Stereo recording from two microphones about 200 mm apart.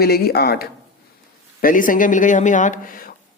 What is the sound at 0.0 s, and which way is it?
Speech, 50° left (ahead or behind).